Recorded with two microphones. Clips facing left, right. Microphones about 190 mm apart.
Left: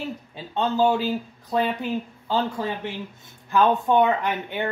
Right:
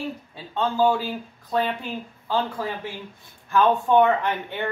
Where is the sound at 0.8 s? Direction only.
20° left (ahead or behind).